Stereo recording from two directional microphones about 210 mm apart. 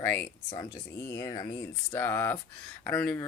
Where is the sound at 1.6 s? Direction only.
10° left (ahead or behind).